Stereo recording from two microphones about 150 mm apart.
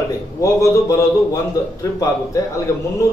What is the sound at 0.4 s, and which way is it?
Speech, 20° left (ahead or behind).